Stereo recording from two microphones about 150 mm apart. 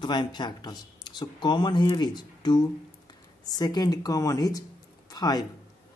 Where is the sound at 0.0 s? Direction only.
30° left (ahead or behind).